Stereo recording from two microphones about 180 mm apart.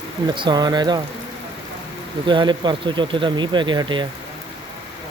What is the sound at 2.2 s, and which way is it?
Speech, 25° right (ahead or behind).